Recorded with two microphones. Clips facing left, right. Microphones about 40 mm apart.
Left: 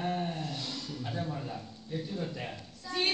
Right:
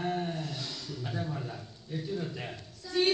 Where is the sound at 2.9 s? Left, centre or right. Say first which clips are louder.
Right 4 dB; left.